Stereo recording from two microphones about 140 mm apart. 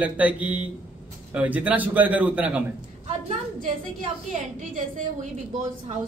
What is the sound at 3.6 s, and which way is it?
Speech, 70° right (ahead or behind).